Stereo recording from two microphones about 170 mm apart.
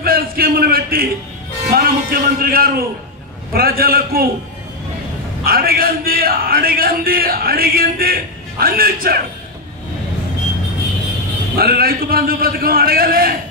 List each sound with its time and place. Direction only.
0.0 s a sound: 60° right (ahead or behind)
1.7 s a man's voice: 60° right (ahead or behind)
5.4 s a man's voice: 60° right (ahead or behind)
11.5 s a man's voice: 60° right (ahead or behind)